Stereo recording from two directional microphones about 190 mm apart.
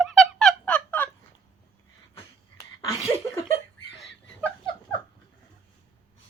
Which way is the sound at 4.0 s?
5° left (ahead or behind).